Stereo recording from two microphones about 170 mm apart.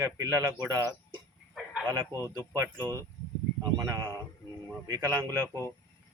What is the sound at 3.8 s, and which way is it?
A man's voice, 20° right (ahead or behind).